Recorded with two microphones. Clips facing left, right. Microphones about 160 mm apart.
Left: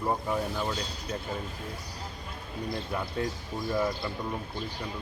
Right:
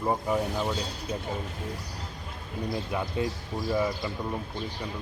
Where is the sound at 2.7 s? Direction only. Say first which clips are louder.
Right 2 dB; 10° right (ahead or behind).